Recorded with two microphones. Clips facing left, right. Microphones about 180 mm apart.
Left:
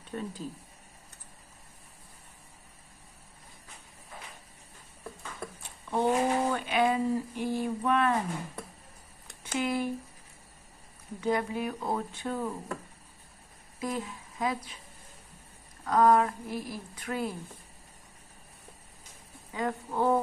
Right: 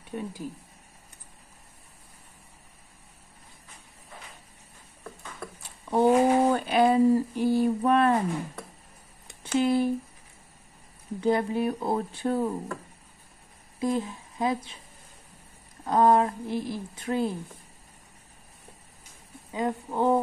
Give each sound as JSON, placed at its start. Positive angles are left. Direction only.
{"t": 0.1, "sound": "speech", "side_deg": -15}
{"t": 5.9, "sound": "a sound", "side_deg": -40}
{"t": 9.4, "sound": "speech", "side_deg": -30}
{"t": 11.1, "sound": "speech", "side_deg": -30}
{"t": 13.7, "sound": "speech", "side_deg": -25}
{"t": 15.8, "sound": "a woman's voice", "side_deg": -25}
{"t": 19.5, "sound": "a woman's voice", "side_deg": -20}